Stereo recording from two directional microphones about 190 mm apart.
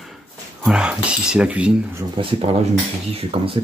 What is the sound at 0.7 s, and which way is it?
Speech, 5° right (ahead or behind).